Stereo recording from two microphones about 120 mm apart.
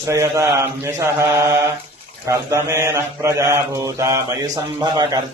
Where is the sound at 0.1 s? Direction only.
25° right (ahead or behind).